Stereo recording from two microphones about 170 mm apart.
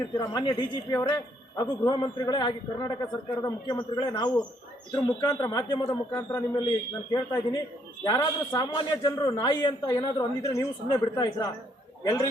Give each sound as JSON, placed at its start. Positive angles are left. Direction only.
{"t": 0.2, "sound": "a man's voice", "side_deg": 25}